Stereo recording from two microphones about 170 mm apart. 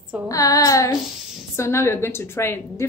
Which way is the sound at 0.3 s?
20° left (ahead or behind).